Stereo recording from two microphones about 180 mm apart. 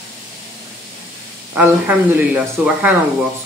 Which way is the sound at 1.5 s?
10° right (ahead or behind).